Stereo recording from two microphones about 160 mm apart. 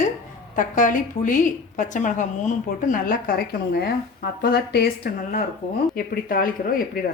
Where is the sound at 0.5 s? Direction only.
55° left (ahead or behind).